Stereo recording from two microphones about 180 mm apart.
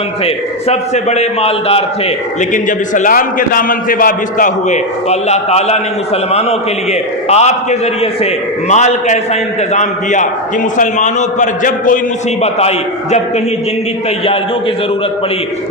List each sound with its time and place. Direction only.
0.7 s a man's voice: 40° left (ahead or behind)
2.4 s a man's voice: 45° left (ahead or behind)
7.3 s a man's voice: 40° left (ahead or behind)